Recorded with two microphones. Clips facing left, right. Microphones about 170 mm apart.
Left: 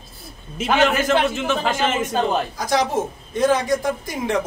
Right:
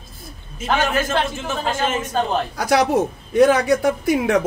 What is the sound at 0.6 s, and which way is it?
A man's voice, 75° left (ahead or behind).